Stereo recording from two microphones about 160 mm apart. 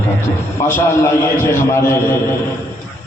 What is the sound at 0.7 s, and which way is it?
Speech, 15° left (ahead or behind).